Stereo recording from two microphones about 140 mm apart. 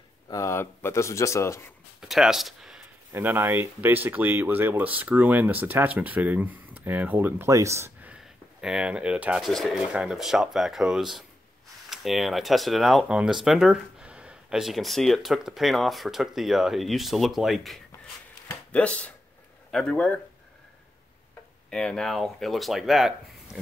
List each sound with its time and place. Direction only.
0.3 s speech: 20° left (ahead or behind)
2.0 s speech: 5° right (ahead or behind)
3.1 s speech: 15° right (ahead or behind)
8.1 s speech: 5° right (ahead or behind)
18.5 s speech: 10° left (ahead or behind)
21.6 s speech: 5° left (ahead or behind)